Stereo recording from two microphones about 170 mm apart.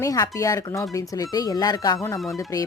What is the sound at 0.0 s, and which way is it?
Speech, 20° left (ahead or behind).